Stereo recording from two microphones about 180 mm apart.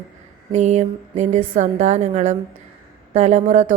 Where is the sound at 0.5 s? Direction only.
40° right (ahead or behind).